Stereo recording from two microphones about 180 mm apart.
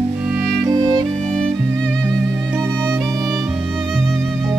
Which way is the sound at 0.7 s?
25° right (ahead or behind).